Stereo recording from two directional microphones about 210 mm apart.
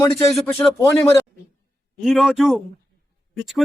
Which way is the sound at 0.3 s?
Centre (ahead or behind).